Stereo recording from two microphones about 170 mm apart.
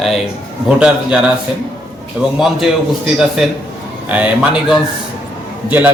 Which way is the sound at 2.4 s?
Centre (ahead or behind).